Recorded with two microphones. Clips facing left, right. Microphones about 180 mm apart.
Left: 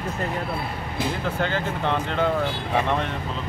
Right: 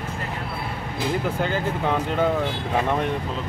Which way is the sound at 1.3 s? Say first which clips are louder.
Right 1 dB; 10° right (ahead or behind).